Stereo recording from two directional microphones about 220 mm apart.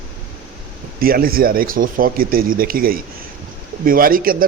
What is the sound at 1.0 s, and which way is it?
Speech, 40° right (ahead or behind).